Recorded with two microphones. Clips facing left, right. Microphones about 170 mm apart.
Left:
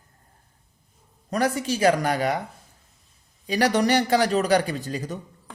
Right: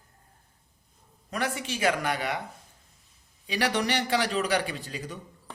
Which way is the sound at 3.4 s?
45° left (ahead or behind).